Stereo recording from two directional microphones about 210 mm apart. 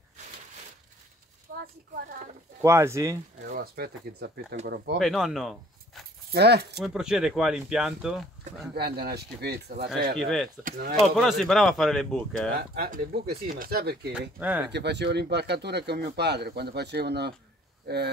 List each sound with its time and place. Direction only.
1.5 s a sound: 40° right (ahead or behind)
2.6 s speech: 15° right (ahead or behind)
3.4 s speech: 45° right (ahead or behind)
4.9 s speech: centre (ahead or behind)
6.3 s speech: 50° right (ahead or behind)
6.8 s speech: 5° right (ahead or behind)
8.5 s speech: 50° right (ahead or behind)
10.1 s speech: centre (ahead or behind)
10.6 s speech: 45° right (ahead or behind)
11.1 s speech: centre (ahead or behind)
12.5 s speech: 45° right (ahead or behind)
14.4 s speech: 5° right (ahead or behind)
14.7 s speech: 55° right (ahead or behind)